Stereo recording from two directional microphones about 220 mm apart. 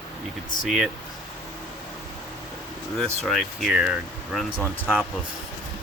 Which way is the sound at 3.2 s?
Centre (ahead or behind).